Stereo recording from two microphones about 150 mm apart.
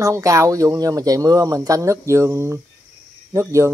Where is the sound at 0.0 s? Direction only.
20° right (ahead or behind).